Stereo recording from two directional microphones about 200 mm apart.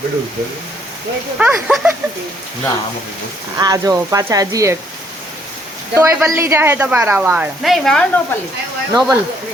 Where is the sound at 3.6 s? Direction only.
20° right (ahead or behind).